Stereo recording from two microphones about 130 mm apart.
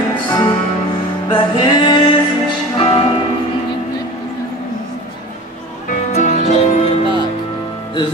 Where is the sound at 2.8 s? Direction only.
50° left (ahead or behind).